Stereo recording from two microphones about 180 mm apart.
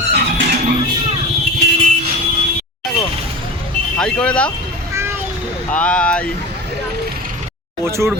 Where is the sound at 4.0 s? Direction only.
5° left (ahead or behind).